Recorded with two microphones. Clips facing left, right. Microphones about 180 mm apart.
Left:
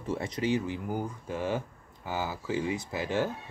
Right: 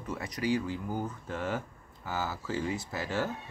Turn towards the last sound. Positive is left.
turn(degrees=15)  # may be behind; listen again after turning